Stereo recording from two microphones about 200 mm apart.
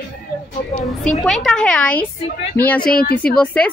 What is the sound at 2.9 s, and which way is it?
Speech, 45° left (ahead or behind).